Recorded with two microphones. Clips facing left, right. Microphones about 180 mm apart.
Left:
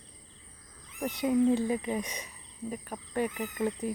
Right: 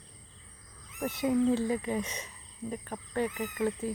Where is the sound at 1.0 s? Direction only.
15° left (ahead or behind).